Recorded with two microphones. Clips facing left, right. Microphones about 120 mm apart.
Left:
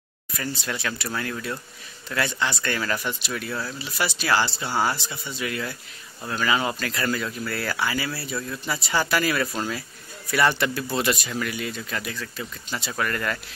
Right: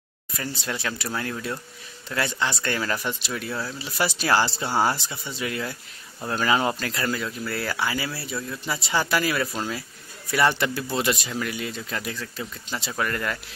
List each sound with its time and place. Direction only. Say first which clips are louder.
0.7 s speech: even; 25° right (ahead or behind)
3.8 s speech: right 3 dB; 35° right (ahead or behind)
7.1 s speech: left 2 dB; 15° right (ahead or behind)